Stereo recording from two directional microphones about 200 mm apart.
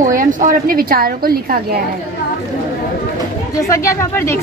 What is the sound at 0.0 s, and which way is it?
A woman's voice, 40° right (ahead or behind).